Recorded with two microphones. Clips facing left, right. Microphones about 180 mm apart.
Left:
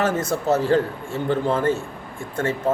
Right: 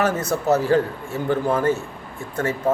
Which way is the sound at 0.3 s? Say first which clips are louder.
Right 1 dB; 25° left (ahead or behind).